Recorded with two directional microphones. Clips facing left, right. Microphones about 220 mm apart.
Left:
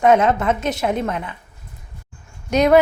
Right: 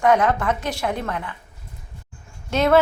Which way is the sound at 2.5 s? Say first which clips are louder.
Left 4 dB; 15° left (ahead or behind).